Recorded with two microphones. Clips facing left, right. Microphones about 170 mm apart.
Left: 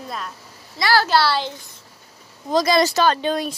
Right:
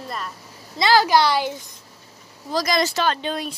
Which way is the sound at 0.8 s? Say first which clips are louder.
Right 1 dB; 20° right (ahead or behind).